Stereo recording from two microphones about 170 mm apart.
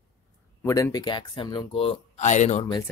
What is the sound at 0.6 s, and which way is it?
Speech, 20° left (ahead or behind).